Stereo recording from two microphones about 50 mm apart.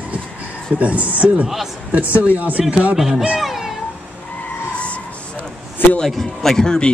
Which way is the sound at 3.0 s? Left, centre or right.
Centre.